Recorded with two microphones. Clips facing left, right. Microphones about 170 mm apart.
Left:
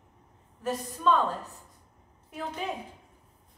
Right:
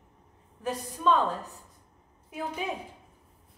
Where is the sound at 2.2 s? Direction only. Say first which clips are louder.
Right 1 dB; 10° right (ahead or behind).